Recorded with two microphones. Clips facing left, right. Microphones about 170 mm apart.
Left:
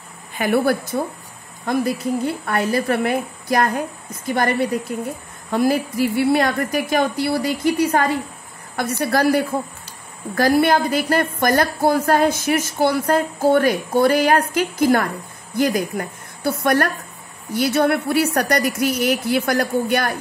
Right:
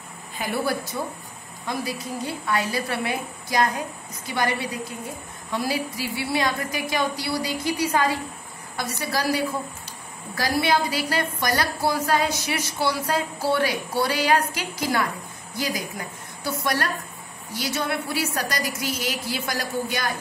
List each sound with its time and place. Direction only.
0.4 s a woman's voice: 60° left (ahead or behind)